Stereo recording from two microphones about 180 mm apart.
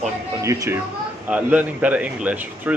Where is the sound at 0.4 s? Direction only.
15° right (ahead or behind).